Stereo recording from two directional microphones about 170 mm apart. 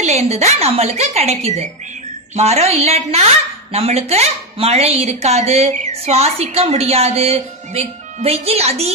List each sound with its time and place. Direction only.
0.0 s speech: 40° right (ahead or behind)